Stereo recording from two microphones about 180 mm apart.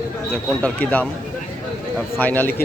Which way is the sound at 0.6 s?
5° left (ahead or behind).